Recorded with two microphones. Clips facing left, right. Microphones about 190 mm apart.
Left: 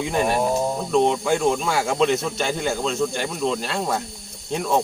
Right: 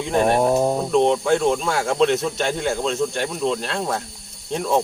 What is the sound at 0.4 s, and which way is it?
Speech, 55° right (ahead or behind).